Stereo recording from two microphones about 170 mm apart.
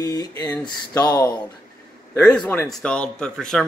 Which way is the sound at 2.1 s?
5° left (ahead or behind).